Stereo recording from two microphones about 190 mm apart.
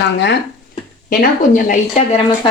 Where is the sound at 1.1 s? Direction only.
50° left (ahead or behind).